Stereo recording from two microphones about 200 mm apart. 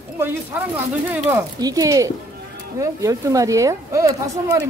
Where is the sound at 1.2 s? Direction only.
15° right (ahead or behind).